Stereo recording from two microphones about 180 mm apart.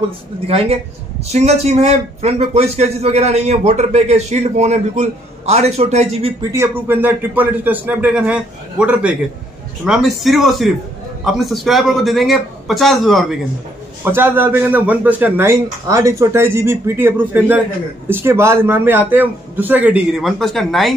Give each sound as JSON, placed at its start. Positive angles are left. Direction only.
{"t": 0.5, "sound": "speech", "side_deg": -35}
{"t": 6.5, "sound": "a man's voice", "side_deg": -10}
{"t": 14.0, "sound": "speech", "side_deg": -10}